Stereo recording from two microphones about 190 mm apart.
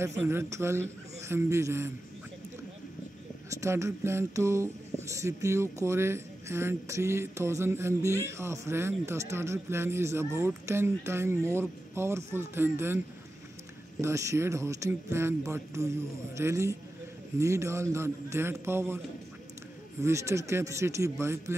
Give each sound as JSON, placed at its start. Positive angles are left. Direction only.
{"t": 0.0, "sound": "speech", "side_deg": -15}
{"t": 3.4, "sound": "speech", "side_deg": -15}
{"t": 14.0, "sound": "speech", "side_deg": -15}
{"t": 20.0, "sound": "speech", "side_deg": -15}